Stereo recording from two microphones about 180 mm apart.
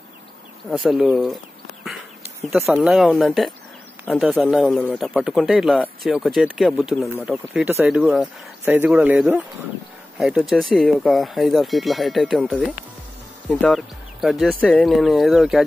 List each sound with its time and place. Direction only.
0.7 s speech: centre (ahead or behind)
2.5 s speech: 5° right (ahead or behind)